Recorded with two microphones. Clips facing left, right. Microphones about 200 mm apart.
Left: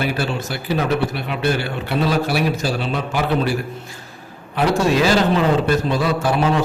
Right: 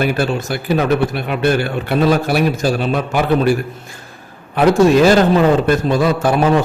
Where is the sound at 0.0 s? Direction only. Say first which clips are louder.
Right 5 dB; 50° right (ahead or behind).